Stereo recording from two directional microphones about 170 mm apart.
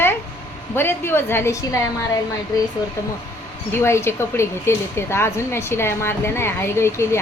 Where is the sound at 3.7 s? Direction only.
15° left (ahead or behind).